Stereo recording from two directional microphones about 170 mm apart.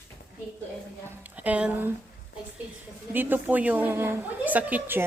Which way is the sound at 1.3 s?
10° right (ahead or behind).